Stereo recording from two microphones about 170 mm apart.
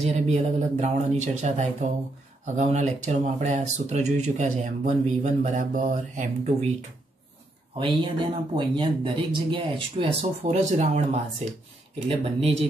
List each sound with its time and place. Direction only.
0.0 s speech: 40° right (ahead or behind)
7.7 s speech: 30° right (ahead or behind)